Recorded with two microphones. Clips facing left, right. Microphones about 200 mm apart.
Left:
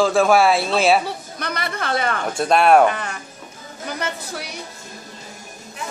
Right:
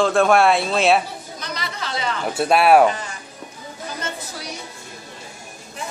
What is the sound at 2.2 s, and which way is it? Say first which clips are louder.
Speech: right 1 dB; 5° right (ahead or behind).